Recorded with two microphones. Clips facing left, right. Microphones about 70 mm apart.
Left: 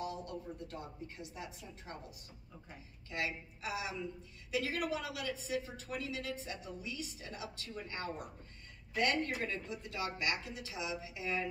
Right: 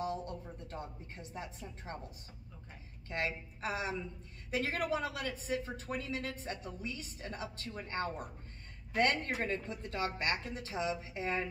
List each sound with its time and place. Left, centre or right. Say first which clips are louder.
0.0 s a woman's voice: right 3 dB; right